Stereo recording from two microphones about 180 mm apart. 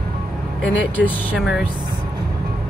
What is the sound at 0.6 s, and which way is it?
Speech, 10° left (ahead or behind).